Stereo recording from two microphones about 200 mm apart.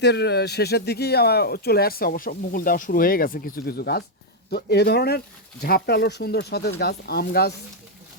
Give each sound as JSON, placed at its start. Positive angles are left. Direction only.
{"t": 0.0, "sound": "speech", "side_deg": 55}